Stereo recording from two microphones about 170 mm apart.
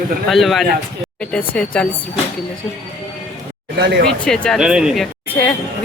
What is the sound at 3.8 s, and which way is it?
Speech, 85° right.